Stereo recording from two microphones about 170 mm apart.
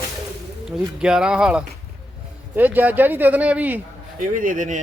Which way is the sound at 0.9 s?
5° right (ahead or behind).